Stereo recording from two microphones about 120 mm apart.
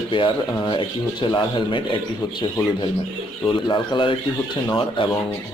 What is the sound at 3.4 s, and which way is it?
Speech, 40° left (ahead or behind).